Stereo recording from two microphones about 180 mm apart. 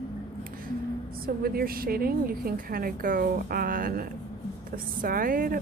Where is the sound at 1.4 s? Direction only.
55° right (ahead or behind).